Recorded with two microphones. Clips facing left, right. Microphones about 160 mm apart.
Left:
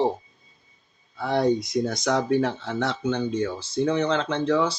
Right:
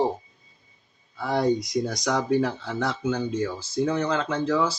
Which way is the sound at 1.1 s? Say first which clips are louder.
Left 1 dB; centre (ahead or behind).